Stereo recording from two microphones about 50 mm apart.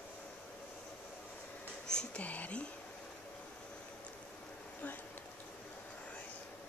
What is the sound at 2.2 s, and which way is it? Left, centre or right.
Speech, left.